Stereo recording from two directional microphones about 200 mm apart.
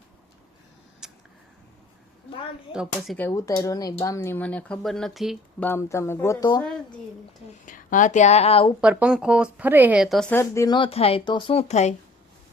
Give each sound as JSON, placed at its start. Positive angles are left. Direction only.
{"t": 1.0, "sound": "a sound", "side_deg": -5}
{"t": 3.2, "sound": "a woman's voice", "side_deg": 15}
{"t": 5.6, "sound": "a woman's voice", "side_deg": 15}
{"t": 7.6, "sound": "speech", "side_deg": 40}
{"t": 8.8, "sound": "a woman's voice", "side_deg": -5}